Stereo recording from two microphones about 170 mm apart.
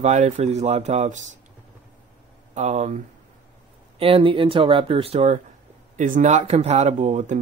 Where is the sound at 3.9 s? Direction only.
35° right (ahead or behind).